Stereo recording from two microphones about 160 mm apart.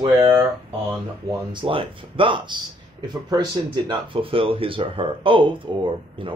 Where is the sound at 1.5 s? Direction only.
30° right (ahead or behind).